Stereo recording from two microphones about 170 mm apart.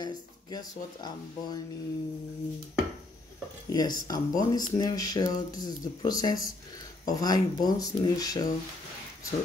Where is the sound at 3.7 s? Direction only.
20° left (ahead or behind).